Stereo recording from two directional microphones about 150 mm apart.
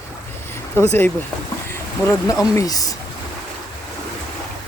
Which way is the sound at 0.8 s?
15° left (ahead or behind).